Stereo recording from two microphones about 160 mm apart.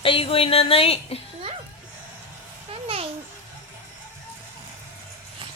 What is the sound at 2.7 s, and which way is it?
Babbling, 35° right (ahead or behind).